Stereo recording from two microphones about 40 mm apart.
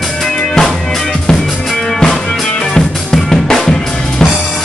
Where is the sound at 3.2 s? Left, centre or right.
Centre.